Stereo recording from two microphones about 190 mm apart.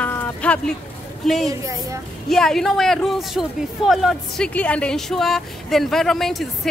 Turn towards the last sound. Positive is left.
turn(degrees=0)  # may be behind; listen again after turning